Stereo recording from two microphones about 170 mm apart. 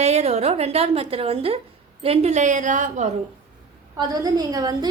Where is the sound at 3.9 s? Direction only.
20° right (ahead or behind).